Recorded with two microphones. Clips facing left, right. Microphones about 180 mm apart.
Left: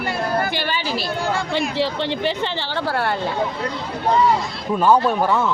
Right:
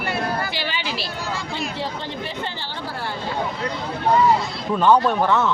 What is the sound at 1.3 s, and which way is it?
Chatter, 55° left (ahead or behind).